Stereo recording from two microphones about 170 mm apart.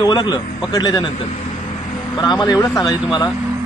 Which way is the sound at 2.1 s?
25° left (ahead or behind).